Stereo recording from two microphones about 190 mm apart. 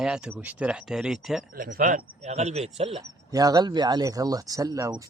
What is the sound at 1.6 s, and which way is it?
Speech, 45° right (ahead or behind).